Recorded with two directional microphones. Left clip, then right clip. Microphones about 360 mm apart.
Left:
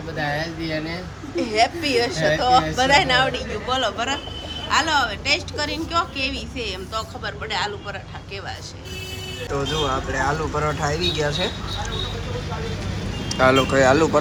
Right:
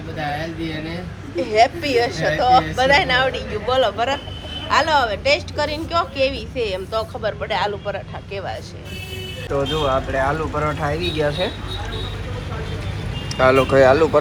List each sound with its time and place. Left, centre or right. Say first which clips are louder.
1.4 s a woman's voice: right 4 dB; centre
9.5 s a woman's voice: right 4 dB; centre
13.3 s a woman's voice: right 3 dB; centre